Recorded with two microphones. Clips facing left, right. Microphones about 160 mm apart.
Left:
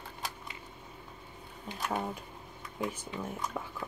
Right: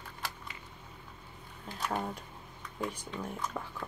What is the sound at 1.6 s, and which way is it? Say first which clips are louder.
Speech: left 1 dB; 10° left (ahead or behind).